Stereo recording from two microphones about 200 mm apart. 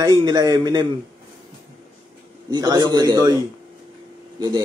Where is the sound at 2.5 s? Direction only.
20° right (ahead or behind).